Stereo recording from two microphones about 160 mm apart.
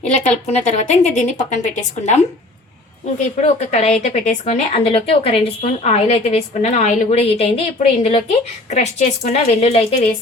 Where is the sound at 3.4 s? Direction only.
45° left (ahead or behind).